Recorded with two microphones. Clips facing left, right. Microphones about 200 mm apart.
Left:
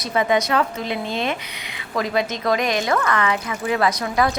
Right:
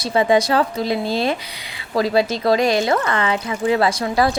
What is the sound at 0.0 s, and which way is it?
A woman's voice, 30° right (ahead or behind).